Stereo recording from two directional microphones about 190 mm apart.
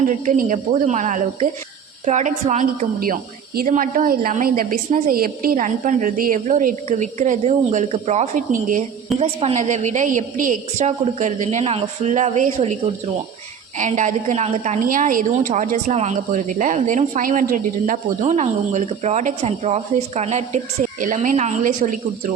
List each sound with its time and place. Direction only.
0.1 s a woman's voice: 40° right (ahead or behind)
9.1 s a woman's voice: 30° right (ahead or behind)
13.7 s a woman's voice: 40° right (ahead or behind)